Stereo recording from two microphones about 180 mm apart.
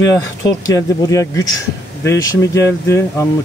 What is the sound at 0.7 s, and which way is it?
Speech, 20° left (ahead or behind).